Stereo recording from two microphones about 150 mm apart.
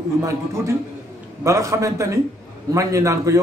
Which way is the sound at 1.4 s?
20° right (ahead or behind).